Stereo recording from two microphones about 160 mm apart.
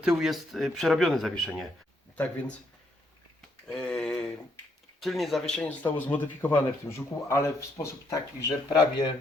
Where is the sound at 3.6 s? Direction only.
5° left (ahead or behind).